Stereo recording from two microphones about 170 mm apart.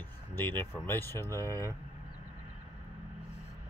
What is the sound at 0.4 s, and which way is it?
Speech, 10° left (ahead or behind).